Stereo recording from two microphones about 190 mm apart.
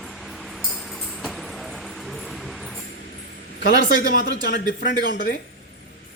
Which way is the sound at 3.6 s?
65° left (ahead or behind).